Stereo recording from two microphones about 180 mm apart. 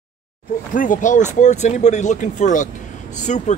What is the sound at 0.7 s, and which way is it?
Speech, 45° left (ahead or behind).